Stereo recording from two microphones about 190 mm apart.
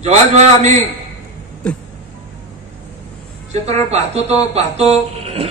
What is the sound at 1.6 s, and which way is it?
Music, 5° left (ahead or behind).